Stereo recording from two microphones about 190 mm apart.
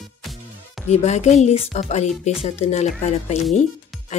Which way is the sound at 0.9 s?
35° left (ahead or behind).